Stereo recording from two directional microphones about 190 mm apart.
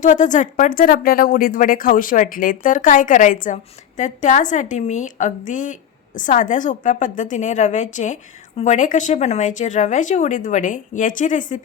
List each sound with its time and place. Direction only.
0.0 s a woman's voice: 40° left (ahead or behind)